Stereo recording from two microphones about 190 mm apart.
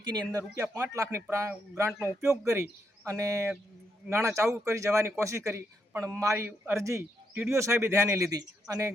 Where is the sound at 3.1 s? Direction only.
15° right (ahead or behind).